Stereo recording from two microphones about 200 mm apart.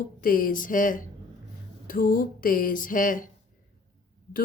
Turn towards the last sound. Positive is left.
turn(degrees=40)  # may be behind; listen again after turning